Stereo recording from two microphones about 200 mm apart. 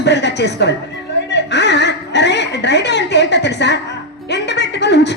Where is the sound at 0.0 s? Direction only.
60° left (ahead or behind).